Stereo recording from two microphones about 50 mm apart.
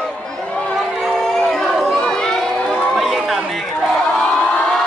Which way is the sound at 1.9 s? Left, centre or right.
Centre.